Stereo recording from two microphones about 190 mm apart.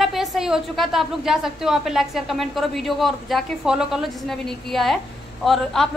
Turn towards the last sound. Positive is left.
turn(degrees=0)  # may be behind; listen again after turning